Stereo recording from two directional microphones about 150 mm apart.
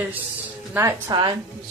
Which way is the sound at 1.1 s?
30° right (ahead or behind).